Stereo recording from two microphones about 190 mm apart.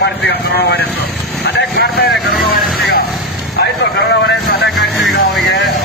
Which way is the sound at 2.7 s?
50° left (ahead or behind).